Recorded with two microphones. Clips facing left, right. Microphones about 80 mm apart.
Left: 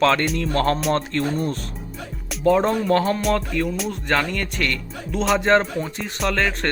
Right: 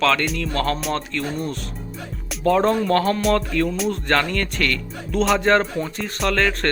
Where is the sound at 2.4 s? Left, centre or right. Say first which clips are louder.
Even; centre.